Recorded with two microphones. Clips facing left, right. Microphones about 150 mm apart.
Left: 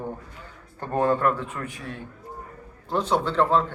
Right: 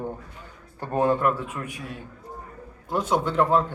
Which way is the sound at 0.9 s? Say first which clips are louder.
Even; 15° right (ahead or behind).